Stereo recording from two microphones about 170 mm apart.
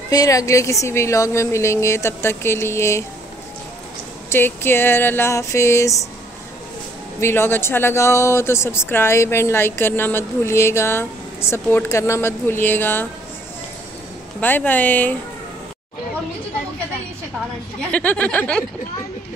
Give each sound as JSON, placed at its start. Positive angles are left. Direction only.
{"t": 0.1, "sound": "speech", "side_deg": 20}
{"t": 4.3, "sound": "speech", "side_deg": 10}
{"t": 7.2, "sound": "speech", "side_deg": 15}
{"t": 14.4, "sound": "speech", "side_deg": 10}
{"t": 17.9, "sound": "speech", "side_deg": 10}